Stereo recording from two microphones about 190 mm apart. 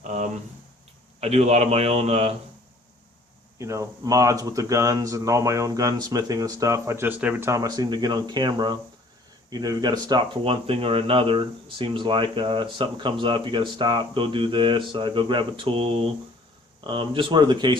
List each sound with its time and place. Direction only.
0.0 s a sound: 40° right (ahead or behind)
1.2 s a man's voice: 35° right (ahead or behind)
3.6 s speech: 15° right (ahead or behind)